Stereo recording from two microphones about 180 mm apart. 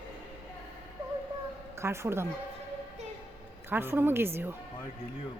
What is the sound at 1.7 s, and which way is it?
Speech, 15° right (ahead or behind).